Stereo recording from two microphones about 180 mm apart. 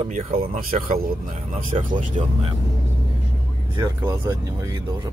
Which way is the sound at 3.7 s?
20° right (ahead or behind).